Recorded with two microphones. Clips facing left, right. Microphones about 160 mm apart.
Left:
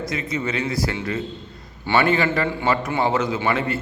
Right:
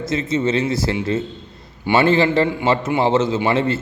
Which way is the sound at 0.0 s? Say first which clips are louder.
Right 6 dB; 25° right (ahead or behind).